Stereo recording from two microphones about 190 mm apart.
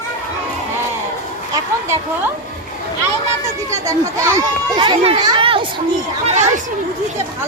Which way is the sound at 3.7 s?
15° right (ahead or behind).